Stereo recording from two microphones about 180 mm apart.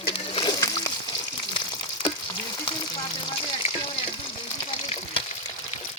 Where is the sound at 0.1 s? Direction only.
30° left (ahead or behind).